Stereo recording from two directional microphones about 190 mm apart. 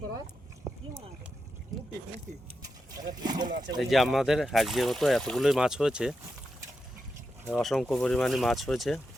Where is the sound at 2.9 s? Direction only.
20° right (ahead or behind).